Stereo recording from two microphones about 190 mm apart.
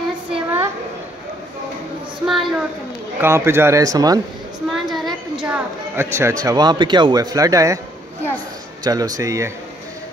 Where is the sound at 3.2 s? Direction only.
15° right (ahead or behind).